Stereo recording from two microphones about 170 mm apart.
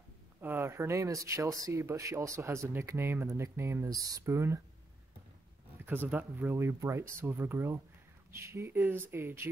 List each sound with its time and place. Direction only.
0.4 s speech: 15° right (ahead or behind)
5.9 s speech: 10° right (ahead or behind)